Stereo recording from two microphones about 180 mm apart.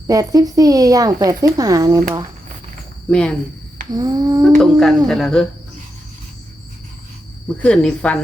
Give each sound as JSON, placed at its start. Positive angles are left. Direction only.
{"t": 0.1, "sound": "speech", "side_deg": -20}
{"t": 3.1, "sound": "speech", "side_deg": 5}
{"t": 3.9, "sound": "speech", "side_deg": -20}
{"t": 4.6, "sound": "speech", "side_deg": 0}
{"t": 7.6, "sound": "speech", "side_deg": 5}